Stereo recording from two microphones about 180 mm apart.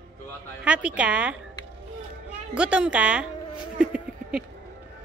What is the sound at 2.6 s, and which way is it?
Speech, 5° right (ahead or behind).